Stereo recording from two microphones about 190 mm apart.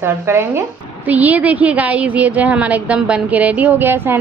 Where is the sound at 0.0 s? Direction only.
15° right (ahead or behind).